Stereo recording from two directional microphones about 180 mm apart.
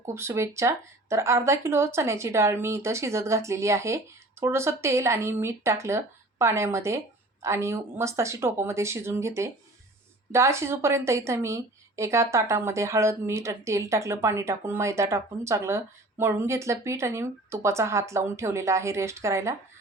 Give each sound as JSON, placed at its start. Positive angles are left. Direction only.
{"t": 0.0, "sound": "a woman's voice", "side_deg": -15}